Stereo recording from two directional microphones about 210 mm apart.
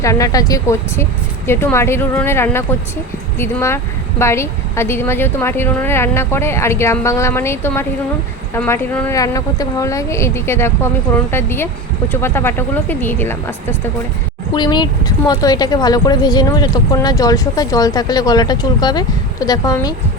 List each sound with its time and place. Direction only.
0.0 s speech: 15° left (ahead or behind)
14.5 s speech: 20° left (ahead or behind)